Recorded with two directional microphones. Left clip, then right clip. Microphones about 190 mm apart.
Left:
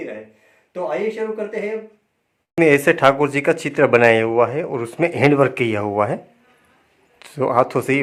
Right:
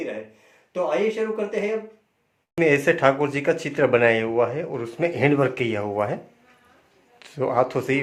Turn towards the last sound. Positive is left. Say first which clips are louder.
# left 4 dB
turn(degrees=30)  # may be behind; listen again after turning